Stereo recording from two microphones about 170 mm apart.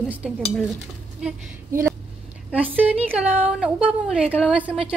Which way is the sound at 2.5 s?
10° right (ahead or behind).